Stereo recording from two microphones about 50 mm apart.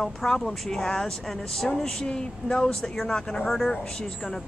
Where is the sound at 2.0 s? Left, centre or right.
Centre.